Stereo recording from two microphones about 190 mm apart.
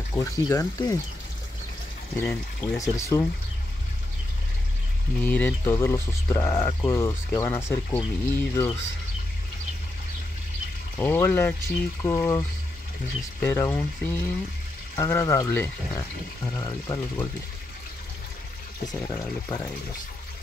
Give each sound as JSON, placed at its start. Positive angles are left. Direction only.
{"t": 0.1, "sound": "speech", "side_deg": 15}
{"t": 2.1, "sound": "speech", "side_deg": 5}
{"t": 2.8, "sound": "speech", "side_deg": 15}
{"t": 5.2, "sound": "speech", "side_deg": 10}
{"t": 11.0, "sound": "speech", "side_deg": 10}